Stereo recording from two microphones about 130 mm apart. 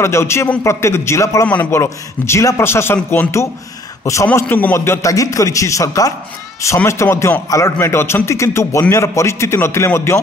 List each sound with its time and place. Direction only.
0.0 s a man's voice: 20° left (ahead or behind)